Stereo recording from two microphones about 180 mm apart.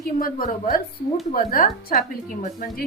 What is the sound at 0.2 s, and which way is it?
A woman's voice, 50° left (ahead or behind).